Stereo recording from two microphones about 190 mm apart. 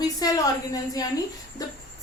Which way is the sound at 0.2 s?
20° left (ahead or behind).